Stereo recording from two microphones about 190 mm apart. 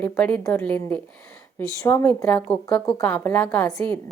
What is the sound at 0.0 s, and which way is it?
A woman's voice, 5° left (ahead or behind).